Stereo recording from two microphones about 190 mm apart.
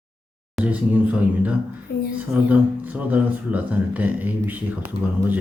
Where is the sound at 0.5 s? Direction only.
5° right (ahead or behind).